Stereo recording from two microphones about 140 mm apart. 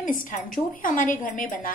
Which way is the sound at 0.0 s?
75° left (ahead or behind).